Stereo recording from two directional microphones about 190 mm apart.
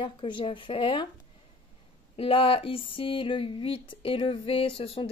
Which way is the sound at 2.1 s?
30° left (ahead or behind).